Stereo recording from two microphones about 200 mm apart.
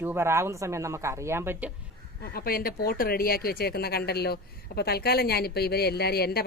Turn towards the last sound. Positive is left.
turn(degrees=50)  # may be behind; listen again after turning